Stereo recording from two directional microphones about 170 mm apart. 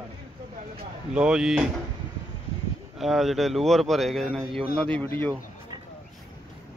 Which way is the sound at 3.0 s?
Centre (ahead or behind).